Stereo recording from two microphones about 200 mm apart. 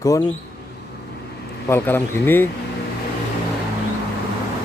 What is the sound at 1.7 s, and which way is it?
Speech, 10° left (ahead or behind).